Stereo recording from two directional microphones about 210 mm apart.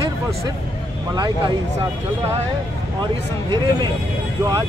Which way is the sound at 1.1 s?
20° right (ahead or behind).